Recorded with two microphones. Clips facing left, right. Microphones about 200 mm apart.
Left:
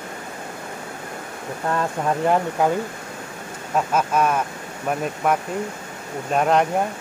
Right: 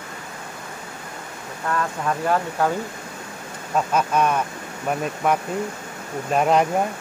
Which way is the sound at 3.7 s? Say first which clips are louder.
Even; 5° left (ahead or behind).